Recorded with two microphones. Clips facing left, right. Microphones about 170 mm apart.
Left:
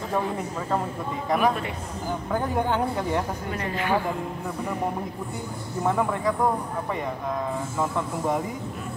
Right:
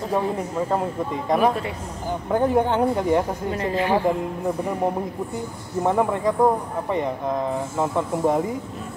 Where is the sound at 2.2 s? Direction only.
20° right (ahead or behind).